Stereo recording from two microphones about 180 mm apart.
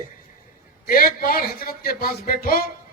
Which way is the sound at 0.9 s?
55° left (ahead or behind).